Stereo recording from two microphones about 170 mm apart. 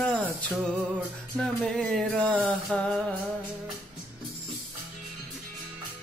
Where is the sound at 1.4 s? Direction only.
5° left (ahead or behind).